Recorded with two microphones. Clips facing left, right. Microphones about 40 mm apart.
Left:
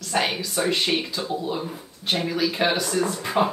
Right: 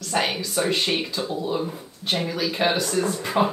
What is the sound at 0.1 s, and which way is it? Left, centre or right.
A woman's voice, centre.